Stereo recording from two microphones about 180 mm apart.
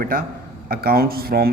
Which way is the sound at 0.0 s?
50° right (ahead or behind).